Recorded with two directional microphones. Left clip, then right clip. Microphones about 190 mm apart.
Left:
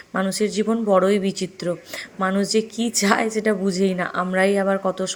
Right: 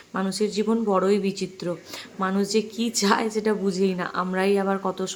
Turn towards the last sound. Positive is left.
turn(degrees=10)  # may be behind; listen again after turning